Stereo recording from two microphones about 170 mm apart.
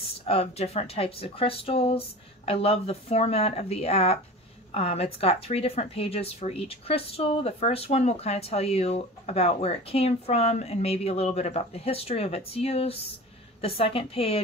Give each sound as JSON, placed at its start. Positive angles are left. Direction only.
{"t": 0.3, "sound": "speech", "side_deg": 35}